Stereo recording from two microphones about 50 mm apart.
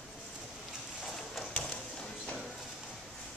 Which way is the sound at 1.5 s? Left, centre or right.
Centre.